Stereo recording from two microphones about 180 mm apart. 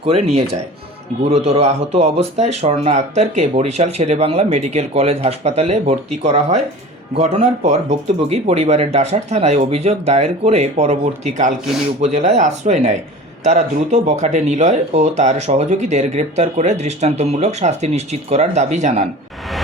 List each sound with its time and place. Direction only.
0.0 s speech: 35° right (ahead or behind)
1.3 s speech: 35° right (ahead or behind)